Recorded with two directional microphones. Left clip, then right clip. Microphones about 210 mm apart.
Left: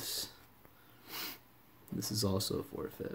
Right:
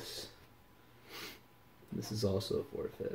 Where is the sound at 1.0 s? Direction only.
50° left (ahead or behind).